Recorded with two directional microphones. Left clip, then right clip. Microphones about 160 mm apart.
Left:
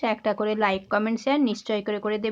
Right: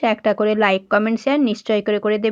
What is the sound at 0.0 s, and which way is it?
Speech, 30° right (ahead or behind).